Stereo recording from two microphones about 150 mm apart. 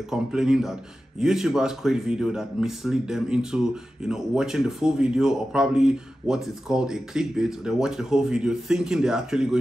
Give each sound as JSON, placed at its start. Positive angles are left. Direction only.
{"t": 0.1, "sound": "speech", "side_deg": -5}